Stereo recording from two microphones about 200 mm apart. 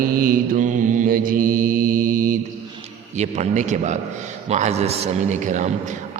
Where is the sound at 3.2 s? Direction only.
35° right (ahead or behind).